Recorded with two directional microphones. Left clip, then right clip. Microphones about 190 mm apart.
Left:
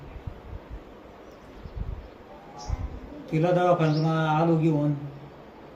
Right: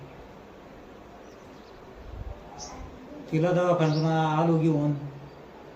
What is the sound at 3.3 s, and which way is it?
Speech, 15° left (ahead or behind).